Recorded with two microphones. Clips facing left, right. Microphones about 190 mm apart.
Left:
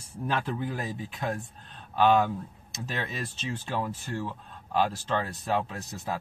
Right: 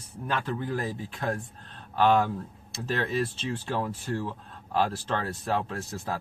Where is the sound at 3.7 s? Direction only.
Centre (ahead or behind).